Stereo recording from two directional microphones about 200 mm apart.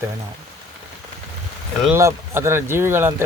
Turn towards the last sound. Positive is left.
turn(degrees=-10)  # may be behind; listen again after turning